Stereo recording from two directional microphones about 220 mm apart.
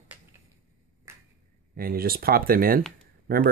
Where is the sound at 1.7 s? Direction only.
40° right (ahead or behind).